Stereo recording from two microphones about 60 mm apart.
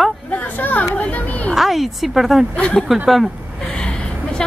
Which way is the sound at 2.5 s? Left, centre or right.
Left.